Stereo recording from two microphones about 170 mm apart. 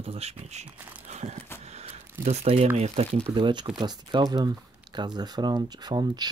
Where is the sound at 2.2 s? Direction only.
35° right (ahead or behind).